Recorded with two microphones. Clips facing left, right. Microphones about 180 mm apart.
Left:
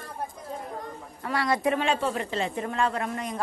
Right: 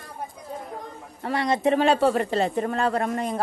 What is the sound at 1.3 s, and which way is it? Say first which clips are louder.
Speech: right 3 dB; 25° right (ahead or behind).